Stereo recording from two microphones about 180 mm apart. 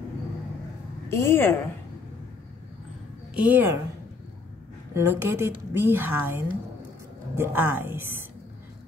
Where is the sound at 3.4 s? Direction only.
10° right (ahead or behind).